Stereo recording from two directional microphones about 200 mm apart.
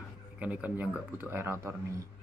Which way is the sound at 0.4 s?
5° right (ahead or behind).